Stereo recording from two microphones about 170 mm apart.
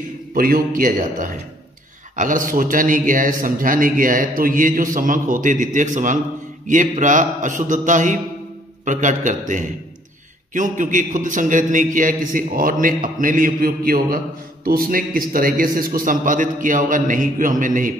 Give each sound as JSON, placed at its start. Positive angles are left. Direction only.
{"t": 0.3, "sound": "a man's voice", "side_deg": -55}